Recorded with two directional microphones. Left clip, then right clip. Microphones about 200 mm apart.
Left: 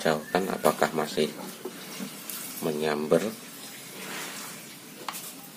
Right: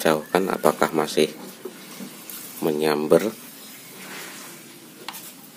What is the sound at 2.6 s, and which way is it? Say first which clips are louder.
Speech: right 6 dB; 50° right (ahead or behind).